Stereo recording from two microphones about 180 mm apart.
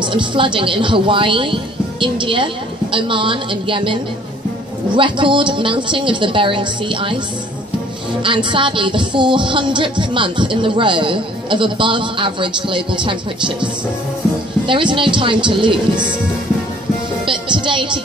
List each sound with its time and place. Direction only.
0.0 s music: 25° right (ahead or behind)
8.2 s music: 25° right (ahead or behind)
14.7 s music: 25° right (ahead or behind)
17.3 s music: 25° right (ahead or behind)